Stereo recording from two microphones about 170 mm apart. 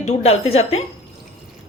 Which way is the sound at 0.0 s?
40° left (ahead or behind).